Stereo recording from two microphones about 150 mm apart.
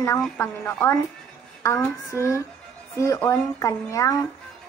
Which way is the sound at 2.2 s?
20° left (ahead or behind).